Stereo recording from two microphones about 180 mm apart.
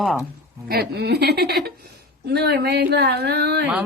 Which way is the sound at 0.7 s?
65° right (ahead or behind).